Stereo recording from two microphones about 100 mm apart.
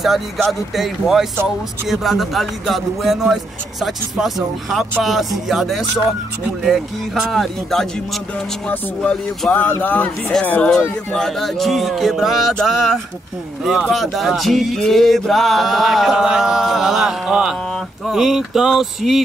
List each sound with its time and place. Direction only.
0.0 s male singing: centre (ahead or behind)
4.6 s male singing: centre (ahead or behind)
7.2 s male singing: 5° left (ahead or behind)
8.6 s speech: 10° left (ahead or behind)
11.1 s male singing: 5° left (ahead or behind)